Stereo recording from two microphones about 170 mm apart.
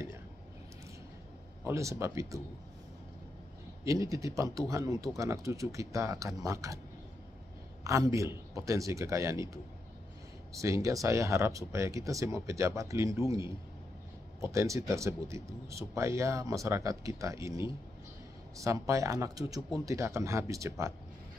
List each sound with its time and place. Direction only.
1.6 s speech: 15° right (ahead or behind)
3.8 s speech: 20° right (ahead or behind)
7.8 s speech: 20° right (ahead or behind)